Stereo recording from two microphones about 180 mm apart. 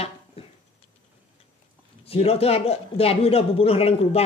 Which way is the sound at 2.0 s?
35° left (ahead or behind).